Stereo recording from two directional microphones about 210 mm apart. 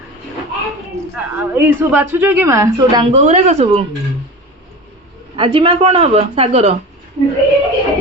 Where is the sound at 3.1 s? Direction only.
35° right (ahead or behind).